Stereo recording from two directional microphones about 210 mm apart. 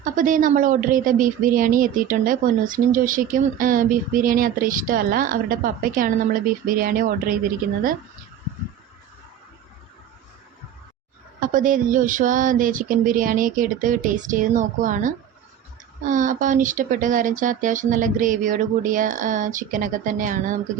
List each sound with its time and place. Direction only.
0.0 s speech: 40° right (ahead or behind)
11.3 s speech: 40° right (ahead or behind)